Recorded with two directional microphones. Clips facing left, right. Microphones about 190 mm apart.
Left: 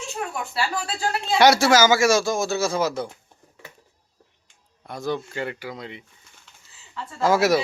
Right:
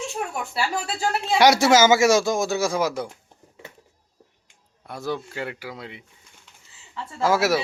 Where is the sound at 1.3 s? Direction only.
15° right (ahead or behind).